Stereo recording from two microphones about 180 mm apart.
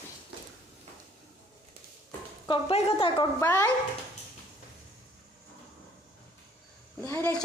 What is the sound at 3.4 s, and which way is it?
Speech, 10° left (ahead or behind).